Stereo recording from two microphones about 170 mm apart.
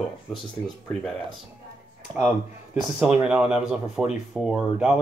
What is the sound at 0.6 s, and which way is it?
Speech, 5° left (ahead or behind).